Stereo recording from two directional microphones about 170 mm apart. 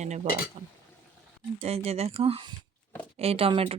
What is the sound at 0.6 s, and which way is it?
Speech, 25° right (ahead or behind).